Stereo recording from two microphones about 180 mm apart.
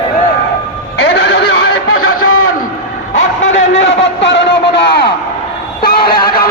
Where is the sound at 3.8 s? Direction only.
85° left.